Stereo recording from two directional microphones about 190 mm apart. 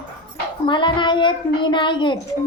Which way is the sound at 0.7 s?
25° left (ahead or behind).